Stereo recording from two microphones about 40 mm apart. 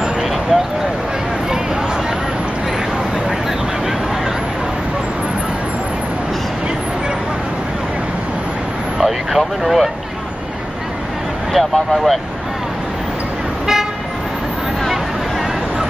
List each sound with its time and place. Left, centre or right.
0.0 s speech: centre
8.9 s speech: centre
11.5 s speech: centre